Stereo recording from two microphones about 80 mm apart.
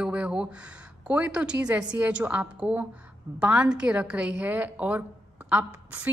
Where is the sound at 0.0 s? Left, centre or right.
Centre.